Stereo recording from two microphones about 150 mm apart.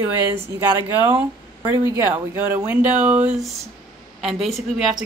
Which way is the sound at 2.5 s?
10° right (ahead or behind).